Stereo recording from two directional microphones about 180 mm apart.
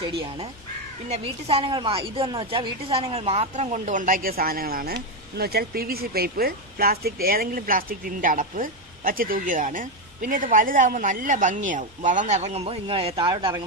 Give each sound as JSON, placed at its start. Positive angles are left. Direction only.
{"t": 1.0, "sound": "a woman's voice", "side_deg": -35}